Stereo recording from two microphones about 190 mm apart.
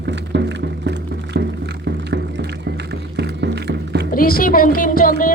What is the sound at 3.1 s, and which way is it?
Music, 60° right (ahead or behind).